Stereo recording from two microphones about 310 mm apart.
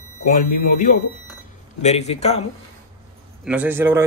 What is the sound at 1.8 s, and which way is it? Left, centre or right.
Speech, left.